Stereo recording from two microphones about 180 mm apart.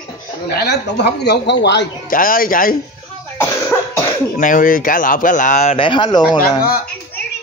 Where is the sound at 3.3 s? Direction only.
15° left (ahead or behind).